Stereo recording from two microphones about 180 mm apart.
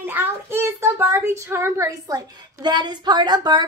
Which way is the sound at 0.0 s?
10° right (ahead or behind).